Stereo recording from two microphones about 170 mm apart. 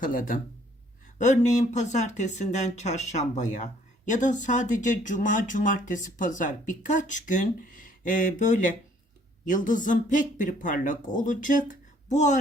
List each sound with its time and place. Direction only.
0.0 s speech: 50° left (ahead or behind)